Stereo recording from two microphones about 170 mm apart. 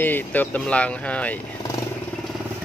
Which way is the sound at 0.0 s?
10° left (ahead or behind).